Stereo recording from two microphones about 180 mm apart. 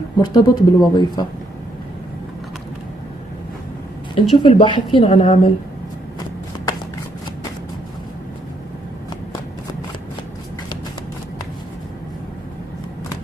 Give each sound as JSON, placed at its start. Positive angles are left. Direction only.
{"t": 0.2, "sound": "speech", "side_deg": 25}
{"t": 4.1, "sound": "speech", "side_deg": 25}